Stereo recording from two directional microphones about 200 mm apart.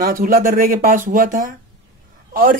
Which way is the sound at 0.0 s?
45° right (ahead or behind).